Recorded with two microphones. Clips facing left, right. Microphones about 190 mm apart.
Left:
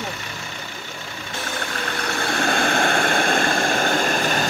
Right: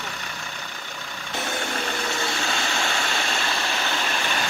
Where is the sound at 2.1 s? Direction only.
55° left (ahead or behind).